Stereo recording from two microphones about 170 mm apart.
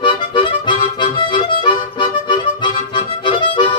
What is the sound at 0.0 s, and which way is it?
Music, 30° left (ahead or behind).